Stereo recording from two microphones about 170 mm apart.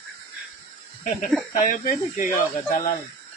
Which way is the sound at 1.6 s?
50° left (ahead or behind).